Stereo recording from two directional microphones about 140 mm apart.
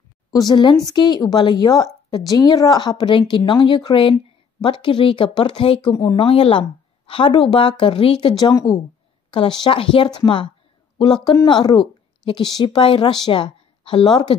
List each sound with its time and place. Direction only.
0.3 s speech: 30° left (ahead or behind)
9.6 s speech: 40° left (ahead or behind)